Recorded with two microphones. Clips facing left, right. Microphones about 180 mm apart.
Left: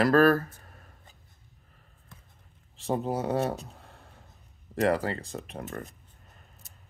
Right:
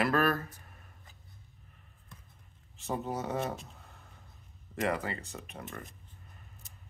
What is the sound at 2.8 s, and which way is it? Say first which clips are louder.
Speech: left 6 dB; 35° left (ahead or behind).